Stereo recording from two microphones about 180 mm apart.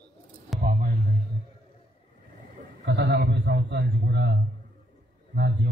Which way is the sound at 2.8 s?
75° right (ahead or behind).